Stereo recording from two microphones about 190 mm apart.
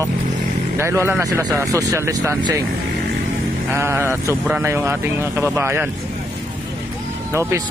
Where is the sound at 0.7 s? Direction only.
15° right (ahead or behind).